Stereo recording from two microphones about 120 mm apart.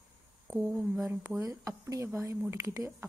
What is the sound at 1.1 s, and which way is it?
Speech, 15° right (ahead or behind).